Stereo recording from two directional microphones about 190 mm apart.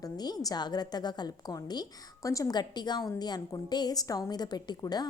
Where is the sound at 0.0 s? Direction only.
20° left (ahead or behind).